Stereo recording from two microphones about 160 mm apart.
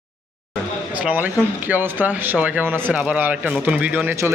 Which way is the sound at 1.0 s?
10° right (ahead or behind).